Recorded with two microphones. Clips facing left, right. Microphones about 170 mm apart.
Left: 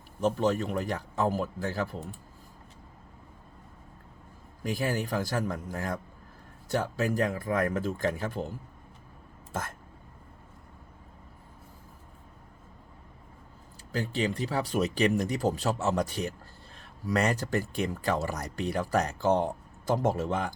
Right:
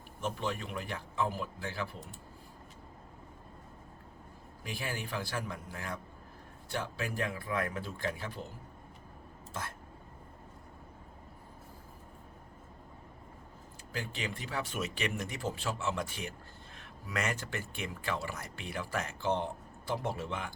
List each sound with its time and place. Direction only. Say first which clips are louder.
0.2 s speech: left 10 dB; 40° left (ahead or behind)
4.6 s speech: left 9 dB; 40° left (ahead or behind)
9.5 s speech: left 6 dB; 45° left (ahead or behind)
13.9 s speech: left 9 dB; 35° left (ahead or behind)